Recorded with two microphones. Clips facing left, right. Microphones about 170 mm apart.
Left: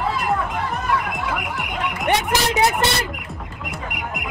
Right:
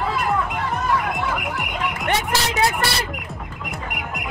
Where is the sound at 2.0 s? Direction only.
20° left (ahead or behind).